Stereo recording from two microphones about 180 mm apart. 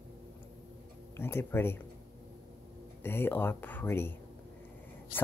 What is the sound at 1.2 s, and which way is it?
Speech, 15° left (ahead or behind).